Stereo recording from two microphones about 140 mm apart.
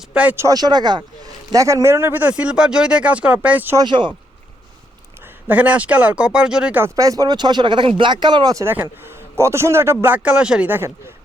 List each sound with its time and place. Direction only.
0.1 s a man's voice: 10° right (ahead or behind)
0.4 s a man's voice: 30° right (ahead or behind); by 3.8 s 10° right (ahead or behind)
3.8 s speech: 35° right (ahead or behind)
5.5 s a man's voice: 10° right (ahead or behind)
6.9 s speech: 25° right (ahead or behind)
8.6 s a man's voice: 15° right (ahead or behind)